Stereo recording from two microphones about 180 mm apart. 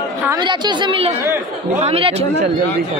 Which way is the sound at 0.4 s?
25° right (ahead or behind).